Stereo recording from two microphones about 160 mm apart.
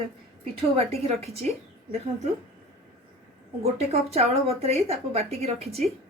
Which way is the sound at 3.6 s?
40° right (ahead or behind).